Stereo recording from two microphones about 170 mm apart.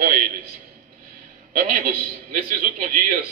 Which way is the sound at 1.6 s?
55° right (ahead or behind).